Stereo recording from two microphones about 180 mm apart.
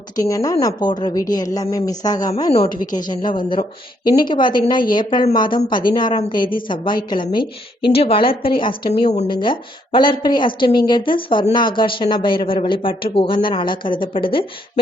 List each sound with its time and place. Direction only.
0.2 s a woman's voice: 20° left (ahead or behind); by 9.2 s 40° left (ahead or behind)
9.2 s a woman's voice: 25° left (ahead or behind)